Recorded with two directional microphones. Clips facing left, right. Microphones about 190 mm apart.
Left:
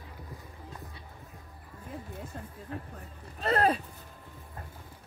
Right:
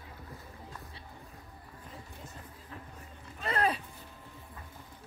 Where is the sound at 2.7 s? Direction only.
50° left (ahead or behind).